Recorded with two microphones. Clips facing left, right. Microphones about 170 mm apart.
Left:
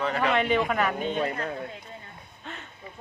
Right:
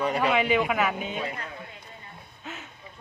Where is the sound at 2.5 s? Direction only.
5° right (ahead or behind).